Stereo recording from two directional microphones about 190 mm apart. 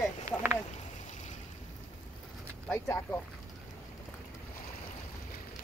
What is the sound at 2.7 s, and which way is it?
Speech, 10° left (ahead or behind).